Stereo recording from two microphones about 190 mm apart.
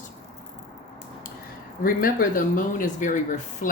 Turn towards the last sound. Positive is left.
turn(degrees=40)  # may be behind; listen again after turning